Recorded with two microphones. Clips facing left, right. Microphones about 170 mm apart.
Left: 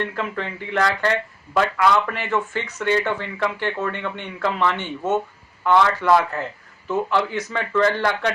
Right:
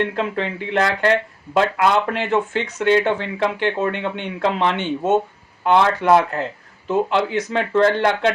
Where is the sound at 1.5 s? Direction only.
25° right (ahead or behind).